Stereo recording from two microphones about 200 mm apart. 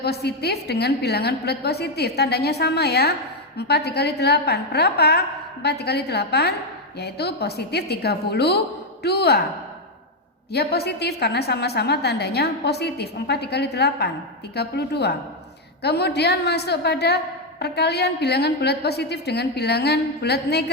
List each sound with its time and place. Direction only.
0.0 s a woman's voice: 55° left (ahead or behind)
10.5 s a woman's voice: 55° left (ahead or behind)